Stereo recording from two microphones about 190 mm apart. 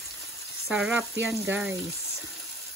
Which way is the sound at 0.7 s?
5° right (ahead or behind).